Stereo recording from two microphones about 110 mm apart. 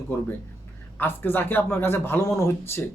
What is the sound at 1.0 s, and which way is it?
A man's voice, 20° left (ahead or behind).